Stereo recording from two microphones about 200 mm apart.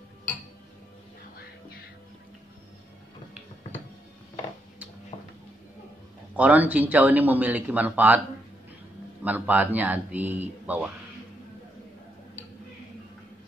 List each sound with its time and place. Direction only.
5.1 s music: 30° left (ahead or behind)
6.3 s a man's voice: 10° right (ahead or behind)
9.2 s a man's voice: 10° right (ahead or behind)